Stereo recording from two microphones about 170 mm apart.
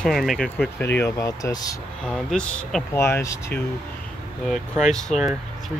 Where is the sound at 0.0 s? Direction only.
Centre (ahead or behind); by 1.8 s 20° left (ahead or behind).